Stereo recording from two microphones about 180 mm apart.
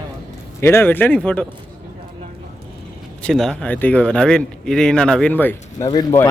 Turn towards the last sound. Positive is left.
turn(degrees=20)  # may be behind; listen again after turning